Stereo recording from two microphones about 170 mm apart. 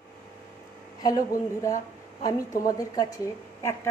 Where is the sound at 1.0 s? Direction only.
20° left (ahead or behind).